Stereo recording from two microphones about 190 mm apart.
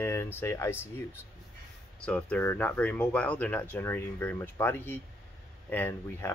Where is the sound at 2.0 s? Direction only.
5° left (ahead or behind).